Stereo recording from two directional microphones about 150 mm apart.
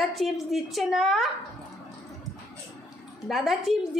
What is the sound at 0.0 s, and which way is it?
A woman's voice, centre (ahead or behind).